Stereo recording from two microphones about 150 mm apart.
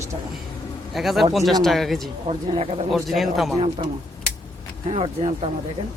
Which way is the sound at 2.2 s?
40° right (ahead or behind).